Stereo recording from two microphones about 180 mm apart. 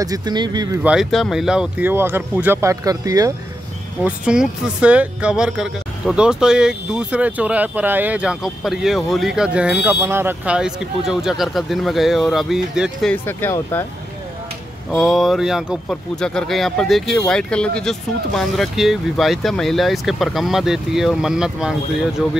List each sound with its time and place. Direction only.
0.0 s speech: 20° right (ahead or behind)
0.8 s speech: centre (ahead or behind); by 3.3 s 20° right (ahead or behind)
4.0 s speech: 5° right (ahead or behind)
13.1 s speech: 10° left (ahead or behind)
14.9 s speech: centre (ahead or behind)